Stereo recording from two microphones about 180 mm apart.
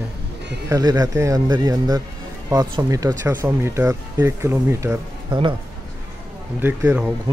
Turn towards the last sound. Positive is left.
turn(degrees=-5)  # may be behind; listen again after turning